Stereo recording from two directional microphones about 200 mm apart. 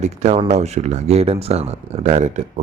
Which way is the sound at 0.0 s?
35° right (ahead or behind).